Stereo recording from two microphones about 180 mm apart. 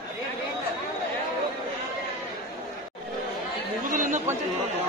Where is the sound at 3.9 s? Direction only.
45° right (ahead or behind).